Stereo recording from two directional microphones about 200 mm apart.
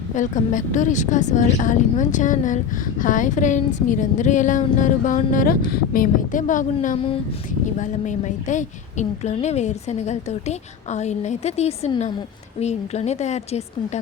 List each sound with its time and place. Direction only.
0.1 s a woman's voice: 40° left (ahead or behind)